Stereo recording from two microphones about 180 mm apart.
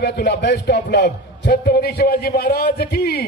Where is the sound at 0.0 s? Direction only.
65° left (ahead or behind).